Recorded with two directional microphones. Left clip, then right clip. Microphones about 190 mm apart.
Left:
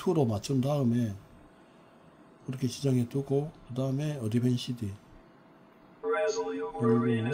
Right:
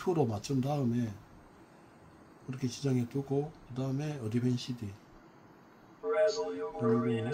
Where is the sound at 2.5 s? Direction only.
70° left (ahead or behind).